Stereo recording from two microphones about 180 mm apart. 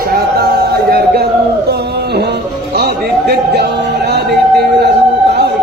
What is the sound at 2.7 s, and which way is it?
Music, 65° right (ahead or behind).